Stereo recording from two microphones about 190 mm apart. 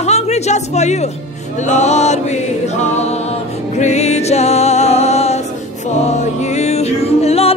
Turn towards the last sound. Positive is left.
turn(degrees=35)  # may be behind; listen again after turning